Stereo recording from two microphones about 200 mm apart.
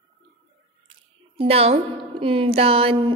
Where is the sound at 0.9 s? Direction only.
30° right (ahead or behind).